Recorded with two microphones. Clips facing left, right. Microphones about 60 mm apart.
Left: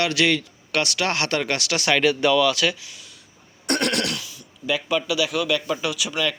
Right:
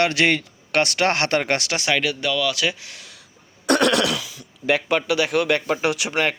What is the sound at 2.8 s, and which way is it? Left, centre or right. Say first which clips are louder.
Speech: right 2 dB; right.